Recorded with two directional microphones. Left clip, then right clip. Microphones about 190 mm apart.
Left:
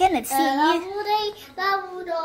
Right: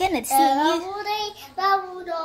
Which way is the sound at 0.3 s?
20° right (ahead or behind).